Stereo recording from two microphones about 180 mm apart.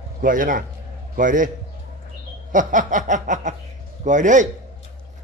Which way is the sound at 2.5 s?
45° right (ahead or behind).